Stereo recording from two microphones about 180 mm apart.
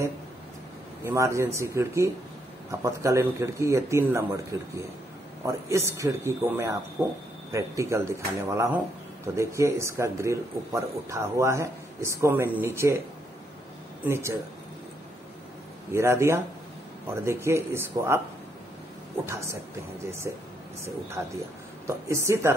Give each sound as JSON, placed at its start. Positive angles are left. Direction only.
{"t": 1.0, "sound": "speech", "side_deg": -15}
{"t": 5.4, "sound": "speech", "side_deg": -15}
{"t": 14.0, "sound": "speech", "side_deg": -15}
{"t": 15.9, "sound": "speech", "side_deg": -15}
{"t": 19.2, "sound": "speech", "side_deg": -15}